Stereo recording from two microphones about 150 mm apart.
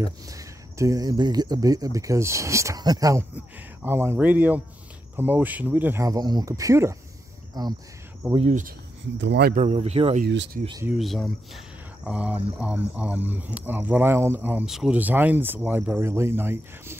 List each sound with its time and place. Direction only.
0.0 s speech: 20° right (ahead or behind)
8.4 s speech: 55° right (ahead or behind)
11.0 s speech: centre (ahead or behind); by 17.0 s 15° right (ahead or behind)